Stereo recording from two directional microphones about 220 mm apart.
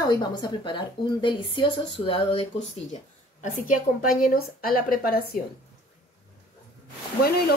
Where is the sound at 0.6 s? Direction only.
20° left (ahead or behind).